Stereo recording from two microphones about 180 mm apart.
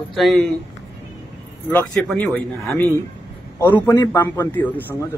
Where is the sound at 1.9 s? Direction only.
5° left (ahead or behind).